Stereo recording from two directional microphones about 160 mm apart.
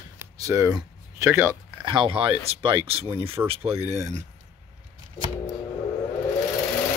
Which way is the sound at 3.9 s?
45° right (ahead or behind).